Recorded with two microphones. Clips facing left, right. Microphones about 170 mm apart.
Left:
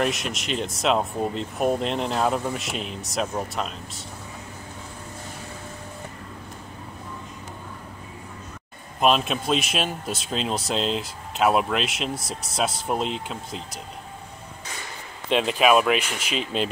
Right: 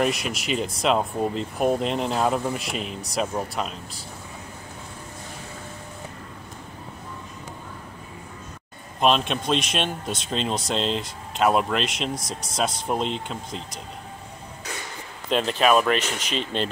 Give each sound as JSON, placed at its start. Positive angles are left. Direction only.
{"t": 0.0, "sound": "a man's voice", "side_deg": 0}
{"t": 9.0, "sound": "a man's voice", "side_deg": 5}
{"t": 15.2, "sound": "a man's voice", "side_deg": 5}